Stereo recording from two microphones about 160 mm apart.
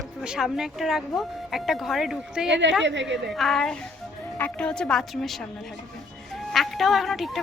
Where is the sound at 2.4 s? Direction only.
90° right.